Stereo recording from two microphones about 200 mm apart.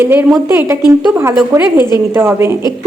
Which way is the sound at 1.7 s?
20° left (ahead or behind).